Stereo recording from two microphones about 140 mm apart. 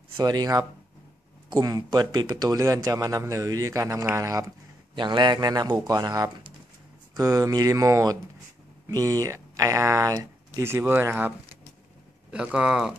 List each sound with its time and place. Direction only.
0.2 s a man's voice: 30° right (ahead or behind); by 12.9 s 5° right (ahead or behind)